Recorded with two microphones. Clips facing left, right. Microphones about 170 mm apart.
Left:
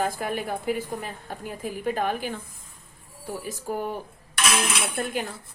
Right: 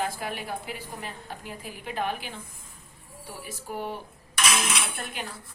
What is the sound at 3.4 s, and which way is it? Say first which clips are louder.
Speech: left 3 dB; 45° left (ahead or behind).